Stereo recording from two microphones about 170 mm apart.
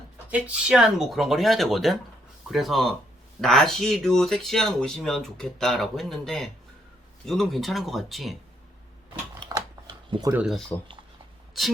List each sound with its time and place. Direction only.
0.3 s speech: 10° right (ahead or behind)
9.4 s a sound: 25° right (ahead or behind)
10.3 s speech: centre (ahead or behind)